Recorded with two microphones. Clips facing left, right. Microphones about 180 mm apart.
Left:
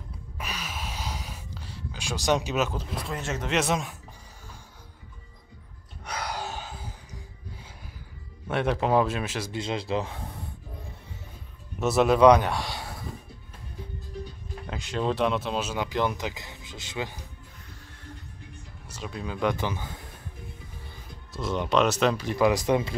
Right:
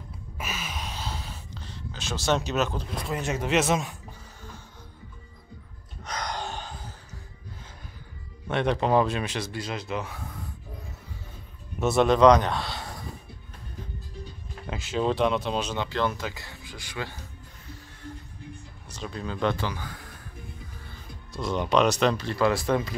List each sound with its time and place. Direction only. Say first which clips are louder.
0.4 s a sound: right 1 dB; 5° right (ahead or behind)
3.2 s speech: right 3 dB; 10° right (ahead or behind)
6.0 s gasp: even; 5° left (ahead or behind)
8.5 s speech: right 1 dB; 5° left (ahead or behind)
9.5 s speech: left 3 dB; 25° left (ahead or behind)
11.8 s speech: even; 5° left (ahead or behind)
14.7 s speech: right 2 dB; centre (ahead or behind); by 17.2 s 20° left (ahead or behind)
18.9 s speech: right 1 dB; 5° left (ahead or behind); by 20.1 s 25° left (ahead or behind)
21.3 s speech: right 1 dB; 5° left (ahead or behind); by 22.9 s 20° left (ahead or behind)